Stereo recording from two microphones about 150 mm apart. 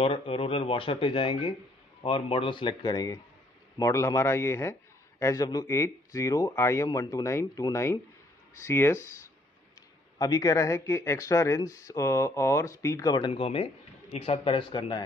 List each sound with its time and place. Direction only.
0.0 s speech: 40° left (ahead or behind); by 9.0 s 15° left (ahead or behind)
10.1 s speech: 25° left (ahead or behind)
13.3 s speech: 40° left (ahead or behind)